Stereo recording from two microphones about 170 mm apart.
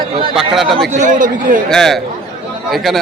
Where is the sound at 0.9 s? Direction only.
50° right (ahead or behind).